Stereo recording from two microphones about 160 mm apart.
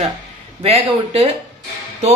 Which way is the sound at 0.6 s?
40° right (ahead or behind).